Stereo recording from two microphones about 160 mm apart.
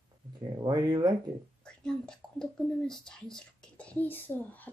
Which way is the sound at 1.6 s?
5° left (ahead or behind).